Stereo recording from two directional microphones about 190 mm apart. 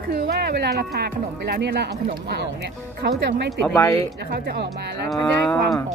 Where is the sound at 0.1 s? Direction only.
60° right (ahead or behind).